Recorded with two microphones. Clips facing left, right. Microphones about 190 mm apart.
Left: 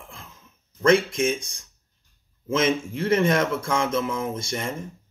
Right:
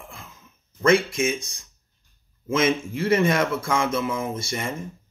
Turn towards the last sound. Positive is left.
turn(degrees=-5)  # may be behind; listen again after turning